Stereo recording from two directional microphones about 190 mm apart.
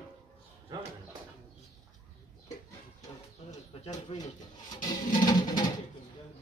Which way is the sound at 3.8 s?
35° left (ahead or behind).